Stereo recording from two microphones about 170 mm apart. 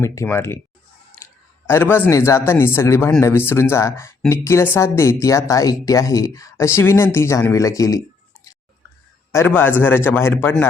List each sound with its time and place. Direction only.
0.0 s speech: 15° left (ahead or behind)
1.2 s a sound: 15° left (ahead or behind)
1.6 s speech: 15° left (ahead or behind)
9.3 s speech: 15° left (ahead or behind)